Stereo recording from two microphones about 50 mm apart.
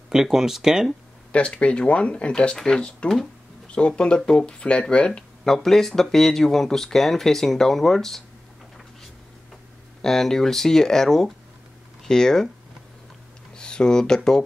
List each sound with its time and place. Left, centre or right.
0.1 s speech: centre
1.3 s speech: left; by 8.2 s centre
10.0 s speech: centre
13.6 s speech: centre